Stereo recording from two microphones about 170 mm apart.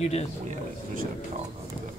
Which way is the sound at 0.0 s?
35° left (ahead or behind).